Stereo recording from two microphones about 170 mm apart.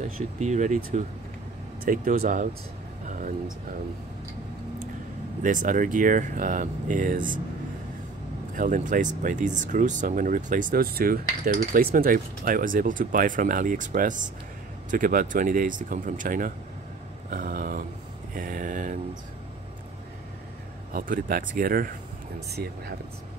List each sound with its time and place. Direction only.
0.0 s speech: 45° right (ahead or behind)
3.1 s a sound: 50° right (ahead or behind)
5.4 s speech: 50° right (ahead or behind)
8.5 s speech: 50° right (ahead or behind)
17.3 s a sound: 55° right (ahead or behind)
18.3 s speech: 55° right (ahead or behind)
20.9 s speech: 55° right (ahead or behind)
22.5 s speech: 70° right (ahead or behind)